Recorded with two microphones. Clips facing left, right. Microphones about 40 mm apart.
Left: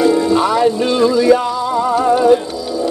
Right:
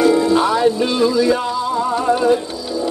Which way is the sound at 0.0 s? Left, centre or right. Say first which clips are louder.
Left 1 dB; centre.